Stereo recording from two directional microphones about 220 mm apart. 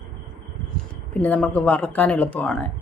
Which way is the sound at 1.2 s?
5° left (ahead or behind).